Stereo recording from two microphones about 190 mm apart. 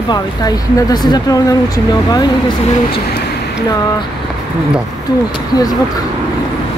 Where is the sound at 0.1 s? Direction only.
20° left (ahead or behind).